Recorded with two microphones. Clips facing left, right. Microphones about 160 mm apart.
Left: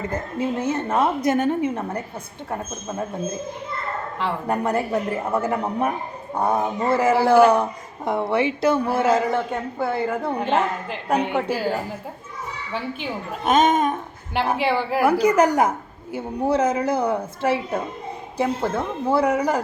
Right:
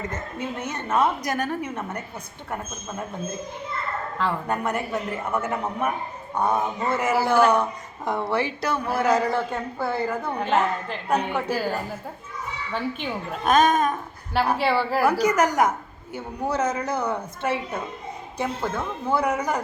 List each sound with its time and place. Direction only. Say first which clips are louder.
0.1 s a woman's voice: left 6 dB; 30° left (ahead or behind)
4.4 s a woman's voice: left 4 dB; 30° left (ahead or behind)
13.0 s a woman's voice: left 1 dB; 20° left (ahead or behind)
15.2 s a woman's voice: left 3 dB; 30° left (ahead or behind)